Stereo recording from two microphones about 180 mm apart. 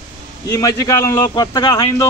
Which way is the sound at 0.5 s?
20° left (ahead or behind).